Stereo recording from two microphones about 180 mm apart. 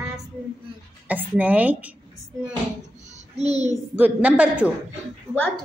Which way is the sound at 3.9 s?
10° right (ahead or behind).